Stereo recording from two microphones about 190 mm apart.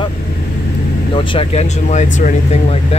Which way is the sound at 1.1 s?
30° left (ahead or behind).